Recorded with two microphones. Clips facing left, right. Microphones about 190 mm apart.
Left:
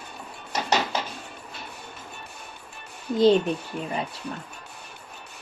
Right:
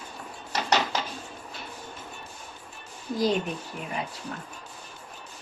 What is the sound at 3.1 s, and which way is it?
Speech, 25° left (ahead or behind).